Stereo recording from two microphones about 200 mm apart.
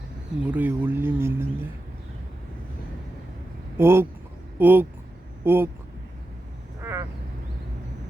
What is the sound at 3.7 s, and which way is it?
Speech, 10° right (ahead or behind).